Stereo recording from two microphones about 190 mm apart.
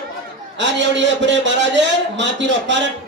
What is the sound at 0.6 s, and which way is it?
A man's voice, 70° right (ahead or behind).